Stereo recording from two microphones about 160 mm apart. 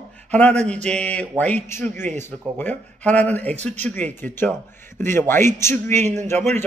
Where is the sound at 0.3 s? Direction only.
10° left (ahead or behind).